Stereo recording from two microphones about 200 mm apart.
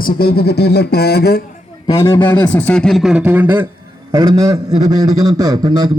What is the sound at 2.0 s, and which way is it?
A man's voice, 10° left (ahead or behind).